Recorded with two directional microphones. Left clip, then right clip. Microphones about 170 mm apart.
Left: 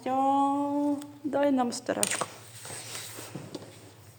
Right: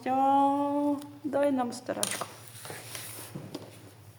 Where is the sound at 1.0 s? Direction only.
15° left (ahead or behind); by 2.2 s 35° left (ahead or behind).